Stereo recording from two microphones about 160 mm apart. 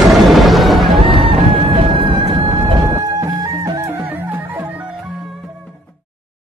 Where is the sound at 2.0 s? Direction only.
30° right (ahead or behind).